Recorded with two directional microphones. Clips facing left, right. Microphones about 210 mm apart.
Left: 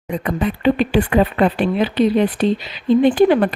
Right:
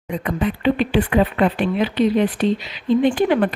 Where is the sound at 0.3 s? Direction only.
40° left (ahead or behind).